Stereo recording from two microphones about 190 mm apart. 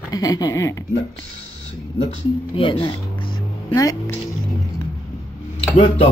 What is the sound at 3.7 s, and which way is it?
Speech, 15° left (ahead or behind).